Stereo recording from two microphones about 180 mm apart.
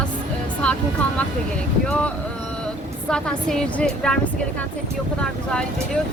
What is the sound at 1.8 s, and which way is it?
Speech, 5° left (ahead or behind).